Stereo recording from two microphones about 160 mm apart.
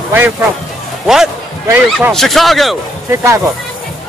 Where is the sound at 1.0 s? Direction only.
Centre (ahead or behind).